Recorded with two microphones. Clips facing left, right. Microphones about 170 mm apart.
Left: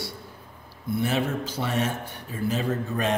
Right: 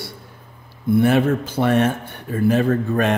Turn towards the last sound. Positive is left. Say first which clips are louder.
# right 8 dB
turn(degrees=-60)  # may be behind; listen again after turning